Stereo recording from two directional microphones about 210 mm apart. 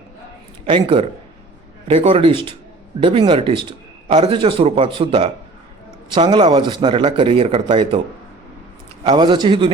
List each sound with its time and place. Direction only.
0.6 s a man's voice: 25° right (ahead or behind)
9.0 s speech: 20° right (ahead or behind)